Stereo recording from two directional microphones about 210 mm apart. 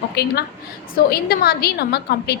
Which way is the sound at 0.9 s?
45° left (ahead or behind).